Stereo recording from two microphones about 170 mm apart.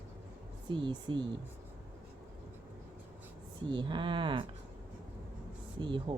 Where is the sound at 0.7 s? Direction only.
30° right (ahead or behind).